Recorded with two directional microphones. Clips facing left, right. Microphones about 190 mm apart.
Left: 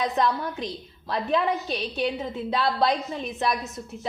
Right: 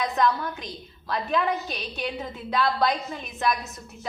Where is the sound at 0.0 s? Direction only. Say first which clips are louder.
Even; 30° left (ahead or behind).